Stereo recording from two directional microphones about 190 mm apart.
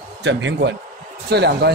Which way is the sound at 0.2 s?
70° right (ahead or behind).